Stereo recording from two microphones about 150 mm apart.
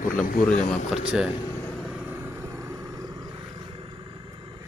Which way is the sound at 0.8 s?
5° right (ahead or behind).